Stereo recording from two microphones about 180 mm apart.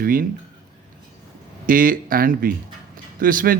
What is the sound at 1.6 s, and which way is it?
Speech, 50° right (ahead or behind).